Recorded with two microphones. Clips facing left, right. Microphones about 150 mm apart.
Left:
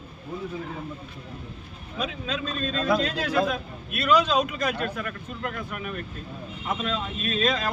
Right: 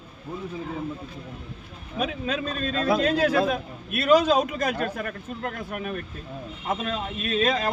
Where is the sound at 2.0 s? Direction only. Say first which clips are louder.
Right 3 dB; 55° right (ahead or behind).